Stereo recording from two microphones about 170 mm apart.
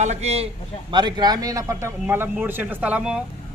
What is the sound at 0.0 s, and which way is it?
Speech, 40° right (ahead or behind).